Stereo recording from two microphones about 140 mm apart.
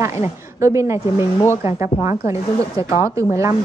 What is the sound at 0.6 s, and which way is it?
Speech, 20° right (ahead or behind).